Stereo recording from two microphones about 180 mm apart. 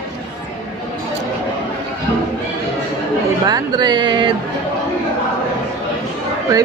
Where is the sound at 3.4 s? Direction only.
25° right (ahead or behind).